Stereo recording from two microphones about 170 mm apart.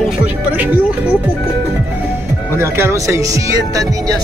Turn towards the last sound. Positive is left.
turn(degrees=-15)  # may be behind; listen again after turning